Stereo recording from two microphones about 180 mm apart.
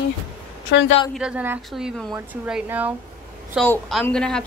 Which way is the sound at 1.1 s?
5° right (ahead or behind).